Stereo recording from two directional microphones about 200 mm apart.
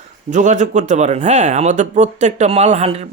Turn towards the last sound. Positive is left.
turn(degrees=-30)  # may be behind; listen again after turning